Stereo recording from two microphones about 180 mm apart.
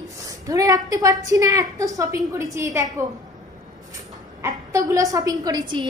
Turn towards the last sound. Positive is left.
turn(degrees=-25)  # may be behind; listen again after turning